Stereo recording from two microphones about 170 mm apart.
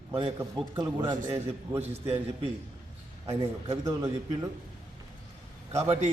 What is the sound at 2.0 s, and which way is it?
Speech, 35° right (ahead or behind).